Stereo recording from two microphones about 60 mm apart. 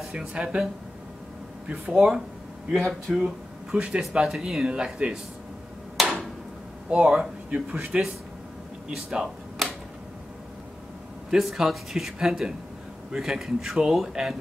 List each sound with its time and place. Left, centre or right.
0.1 s a man's voice: centre
1.9 s a man's voice: centre
3.3 s a man's voice: centre
6.0 s a sound: centre
6.9 s a man's voice: centre
8.8 s a sound: centre
11.2 s a man's voice: centre